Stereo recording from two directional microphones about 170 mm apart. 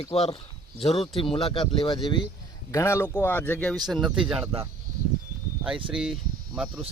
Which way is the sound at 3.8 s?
Centre (ahead or behind).